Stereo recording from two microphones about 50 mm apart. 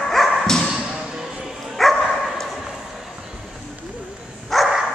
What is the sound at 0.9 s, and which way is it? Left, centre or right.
Basketball bounce, centre.